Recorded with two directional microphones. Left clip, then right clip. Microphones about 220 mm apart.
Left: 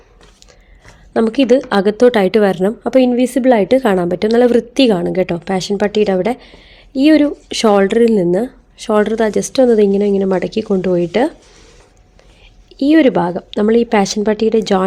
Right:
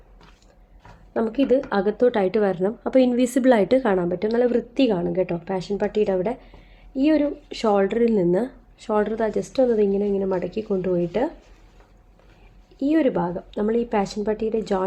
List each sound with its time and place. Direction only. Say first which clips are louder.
1.1 s a woman's voice: left 8 dB; 45° left (ahead or behind)
12.7 s speech: left 10 dB; 45° left (ahead or behind)